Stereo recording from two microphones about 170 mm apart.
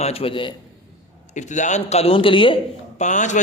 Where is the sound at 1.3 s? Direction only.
45° left (ahead or behind).